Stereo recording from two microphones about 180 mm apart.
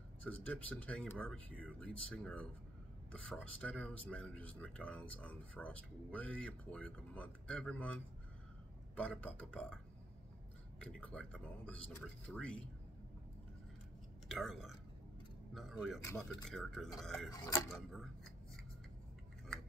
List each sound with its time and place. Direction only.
0.2 s speech: 10° left (ahead or behind)
10.8 s speech: 5° left (ahead or behind)
14.3 s speech: centre (ahead or behind)
16.0 s speech: 10° left (ahead or behind)
17.3 s speech: 20° left (ahead or behind)
17.6 s speech: centre (ahead or behind)